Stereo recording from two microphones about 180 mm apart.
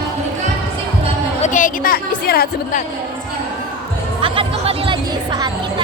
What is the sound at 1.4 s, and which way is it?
A woman's voice, 45° left (ahead or behind).